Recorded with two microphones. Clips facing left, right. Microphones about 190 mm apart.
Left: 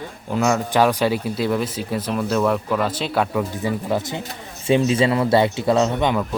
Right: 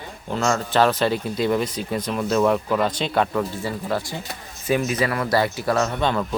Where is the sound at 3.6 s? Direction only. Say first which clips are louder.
Left 3 dB; 15° left (ahead or behind).